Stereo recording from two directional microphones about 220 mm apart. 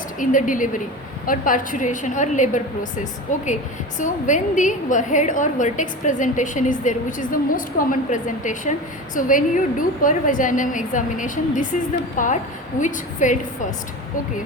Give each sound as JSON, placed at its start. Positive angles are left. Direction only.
{"t": 0.2, "sound": "a woman's voice", "side_deg": 35}